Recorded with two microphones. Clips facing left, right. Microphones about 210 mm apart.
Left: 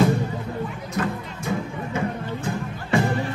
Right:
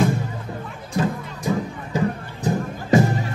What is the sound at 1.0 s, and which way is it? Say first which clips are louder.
Music: right 3 dB; 30° right (ahead or behind).